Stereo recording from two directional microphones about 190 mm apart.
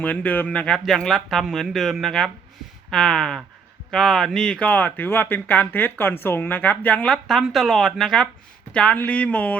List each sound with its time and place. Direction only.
0.0 s speech: 10° left (ahead or behind)